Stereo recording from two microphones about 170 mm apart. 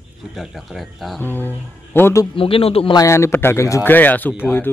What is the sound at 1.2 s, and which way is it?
Speech, 10° left (ahead or behind).